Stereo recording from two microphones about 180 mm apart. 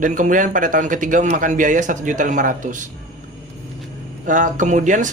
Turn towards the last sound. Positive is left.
turn(degrees=-45)  # may be behind; listen again after turning